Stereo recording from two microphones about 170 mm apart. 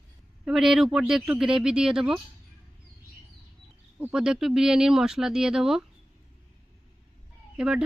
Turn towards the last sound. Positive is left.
turn(degrees=-5)  # may be behind; listen again after turning